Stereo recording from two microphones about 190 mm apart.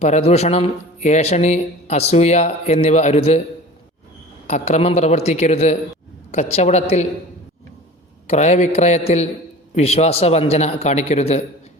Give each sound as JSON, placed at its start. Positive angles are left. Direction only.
{"t": 0.0, "sound": "a man's voice", "side_deg": 35}
{"t": 4.4, "sound": "a man's voice", "side_deg": 35}
{"t": 8.3, "sound": "a man's voice", "side_deg": 35}